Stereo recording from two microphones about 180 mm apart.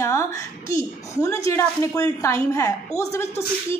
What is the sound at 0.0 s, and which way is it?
A woman's voice, 15° left (ahead or behind).